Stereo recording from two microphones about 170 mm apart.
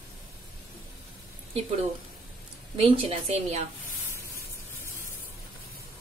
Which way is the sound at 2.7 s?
35° right (ahead or behind).